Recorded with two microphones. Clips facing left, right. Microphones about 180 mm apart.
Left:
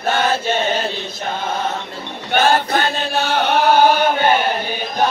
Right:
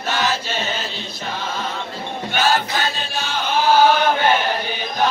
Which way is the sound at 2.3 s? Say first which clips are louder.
Left 5 dB; 55° left (ahead or behind).